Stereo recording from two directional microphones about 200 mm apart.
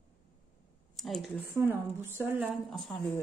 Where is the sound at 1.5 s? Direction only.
10° right (ahead or behind).